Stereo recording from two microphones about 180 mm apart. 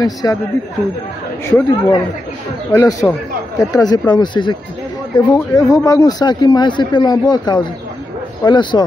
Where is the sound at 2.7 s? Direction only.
20° left (ahead or behind).